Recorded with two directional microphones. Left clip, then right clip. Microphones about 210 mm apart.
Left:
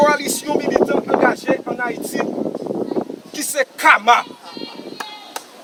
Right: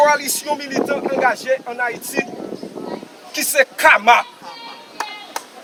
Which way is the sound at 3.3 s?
5° left (ahead or behind).